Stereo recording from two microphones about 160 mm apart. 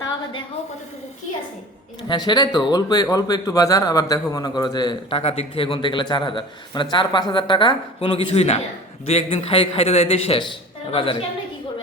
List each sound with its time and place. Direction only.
2.0 s a man's voice: 25° left (ahead or behind)